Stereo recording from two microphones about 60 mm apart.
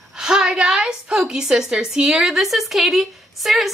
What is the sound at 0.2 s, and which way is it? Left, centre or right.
A woman's voice, centre.